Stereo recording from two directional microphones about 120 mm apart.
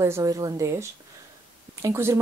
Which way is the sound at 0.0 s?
25° right (ahead or behind).